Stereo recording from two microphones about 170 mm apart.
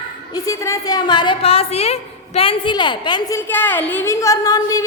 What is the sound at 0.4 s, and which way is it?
A woman's voice, 20° left (ahead or behind).